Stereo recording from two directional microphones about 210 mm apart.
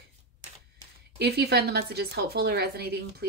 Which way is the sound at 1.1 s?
50° right (ahead or behind).